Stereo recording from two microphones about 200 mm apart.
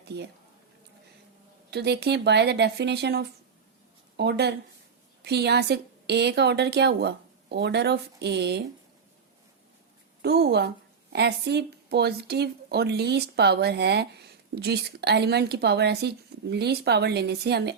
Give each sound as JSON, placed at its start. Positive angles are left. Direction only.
{"t": 1.7, "sound": "speech", "side_deg": -55}
{"t": 10.2, "sound": "speech", "side_deg": -55}